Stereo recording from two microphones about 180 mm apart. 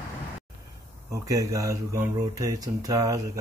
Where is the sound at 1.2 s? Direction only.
20° right (ahead or behind).